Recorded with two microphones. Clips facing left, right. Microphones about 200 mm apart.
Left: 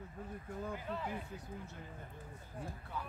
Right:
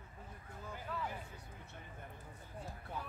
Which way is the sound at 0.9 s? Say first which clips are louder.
Right 1 dB; 25° left (ahead or behind).